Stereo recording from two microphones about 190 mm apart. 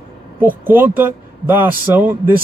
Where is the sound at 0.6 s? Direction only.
10° right (ahead or behind).